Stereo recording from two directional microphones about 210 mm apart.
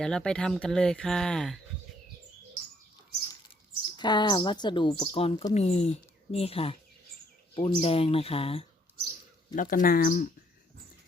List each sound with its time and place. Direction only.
0.0 s speech: 5° left (ahead or behind)
3.9 s speech: 20° left (ahead or behind)
9.6 s speech: 40° left (ahead or behind)